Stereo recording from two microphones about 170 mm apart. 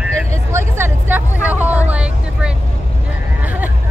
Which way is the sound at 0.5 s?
15° right (ahead or behind).